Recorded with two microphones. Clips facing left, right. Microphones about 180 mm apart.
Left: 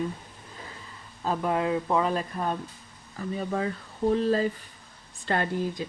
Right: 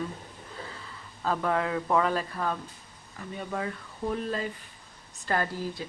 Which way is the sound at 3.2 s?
35° left (ahead or behind).